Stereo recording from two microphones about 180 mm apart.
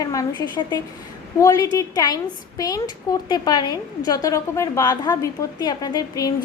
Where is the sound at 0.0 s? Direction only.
20° left (ahead or behind).